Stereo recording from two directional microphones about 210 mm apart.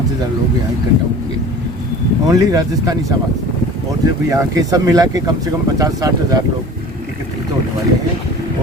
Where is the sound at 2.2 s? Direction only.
15° right (ahead or behind).